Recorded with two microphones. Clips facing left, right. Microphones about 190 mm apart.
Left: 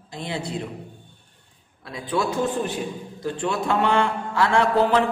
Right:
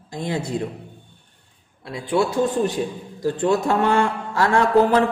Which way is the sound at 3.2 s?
40° right (ahead or behind).